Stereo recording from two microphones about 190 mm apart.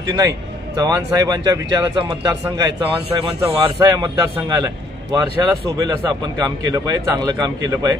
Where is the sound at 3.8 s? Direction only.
20° right (ahead or behind).